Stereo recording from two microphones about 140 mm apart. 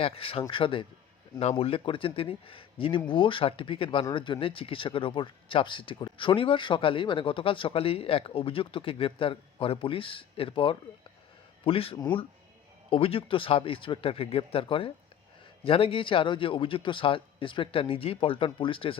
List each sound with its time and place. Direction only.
0.0 s speech: 40° left (ahead or behind)